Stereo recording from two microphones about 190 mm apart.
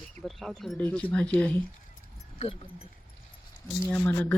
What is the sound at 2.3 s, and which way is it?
Speech, 30° left (ahead or behind).